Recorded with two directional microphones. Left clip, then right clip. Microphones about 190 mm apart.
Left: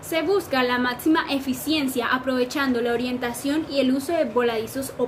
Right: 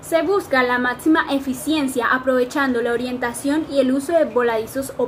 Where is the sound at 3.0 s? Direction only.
30° left (ahead or behind).